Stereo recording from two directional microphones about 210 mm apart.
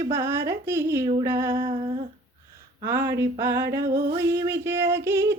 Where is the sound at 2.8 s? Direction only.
10° right (ahead or behind).